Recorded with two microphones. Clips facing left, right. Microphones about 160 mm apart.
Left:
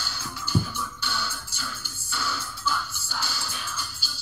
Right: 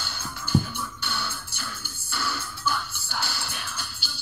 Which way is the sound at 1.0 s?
60° right (ahead or behind).